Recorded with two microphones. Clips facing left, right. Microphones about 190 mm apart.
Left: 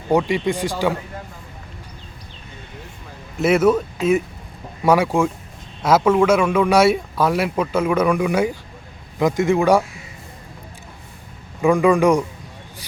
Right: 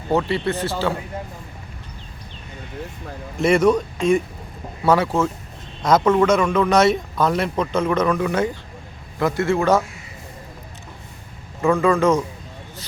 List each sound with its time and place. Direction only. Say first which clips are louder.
0.1 s speech: left 2 dB; 15° left (ahead or behind)
3.3 s speech: left 1 dB; 5° left (ahead or behind)
11.6 s speech: left 2 dB; 15° left (ahead or behind)